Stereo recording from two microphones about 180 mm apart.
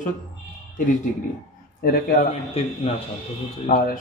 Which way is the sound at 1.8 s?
55° left (ahead or behind).